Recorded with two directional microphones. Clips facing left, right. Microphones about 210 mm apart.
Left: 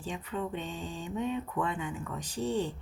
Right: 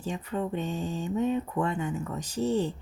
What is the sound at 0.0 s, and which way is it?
Speech, 45° right (ahead or behind).